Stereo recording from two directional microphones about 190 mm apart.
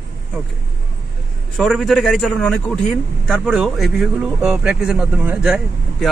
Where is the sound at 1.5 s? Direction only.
Centre (ahead or behind).